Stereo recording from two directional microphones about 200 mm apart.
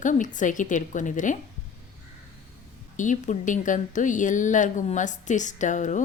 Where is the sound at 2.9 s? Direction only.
40° left (ahead or behind).